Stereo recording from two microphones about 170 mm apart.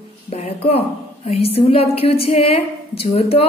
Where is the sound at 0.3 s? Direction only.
40° left (ahead or behind).